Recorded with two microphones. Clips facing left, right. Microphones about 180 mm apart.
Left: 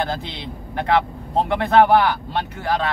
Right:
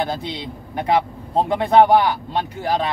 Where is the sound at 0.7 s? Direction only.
15° right (ahead or behind).